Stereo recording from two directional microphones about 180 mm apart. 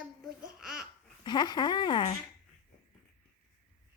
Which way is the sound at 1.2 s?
25° left (ahead or behind).